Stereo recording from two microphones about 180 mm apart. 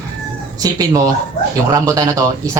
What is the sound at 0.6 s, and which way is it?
Speech, 20° right (ahead or behind).